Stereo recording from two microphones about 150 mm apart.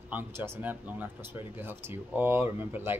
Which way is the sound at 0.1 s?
15° right (ahead or behind).